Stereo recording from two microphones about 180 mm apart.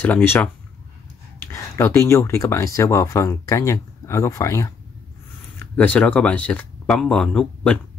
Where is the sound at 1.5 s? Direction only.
15° left (ahead or behind).